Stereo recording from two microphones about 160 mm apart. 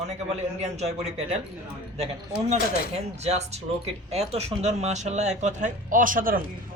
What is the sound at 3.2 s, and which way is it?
A man's voice, 40° right (ahead or behind).